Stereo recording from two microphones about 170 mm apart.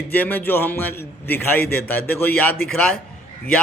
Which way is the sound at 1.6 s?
65° left (ahead or behind).